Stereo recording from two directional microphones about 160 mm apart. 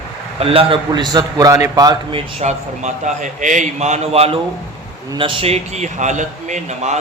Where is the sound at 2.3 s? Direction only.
45° right (ahead or behind).